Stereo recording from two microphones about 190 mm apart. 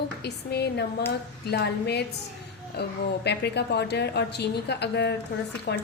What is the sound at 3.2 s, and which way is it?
A woman's voice, 60° left (ahead or behind).